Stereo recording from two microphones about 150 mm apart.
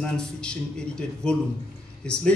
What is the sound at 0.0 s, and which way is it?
A man's voice, 5° left (ahead or behind).